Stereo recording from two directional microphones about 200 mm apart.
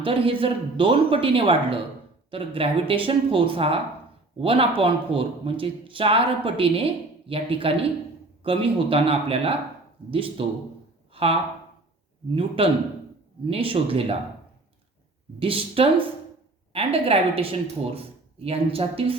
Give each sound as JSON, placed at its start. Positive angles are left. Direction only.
{"t": 0.0, "sound": "speech", "side_deg": -25}
{"t": 11.1, "sound": "a sound", "side_deg": -30}
{"t": 12.3, "sound": "speech", "side_deg": -25}
{"t": 15.4, "sound": "speech", "side_deg": -25}